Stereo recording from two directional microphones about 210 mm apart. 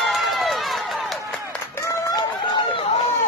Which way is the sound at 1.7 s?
15° left (ahead or behind).